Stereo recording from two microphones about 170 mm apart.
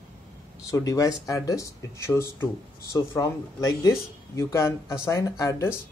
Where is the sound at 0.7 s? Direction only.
20° left (ahead or behind).